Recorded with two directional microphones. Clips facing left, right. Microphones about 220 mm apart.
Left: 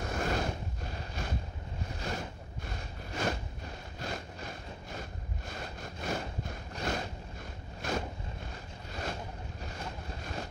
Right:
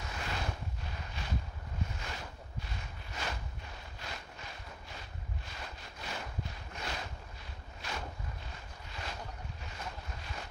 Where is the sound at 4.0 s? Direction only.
45° left (ahead or behind).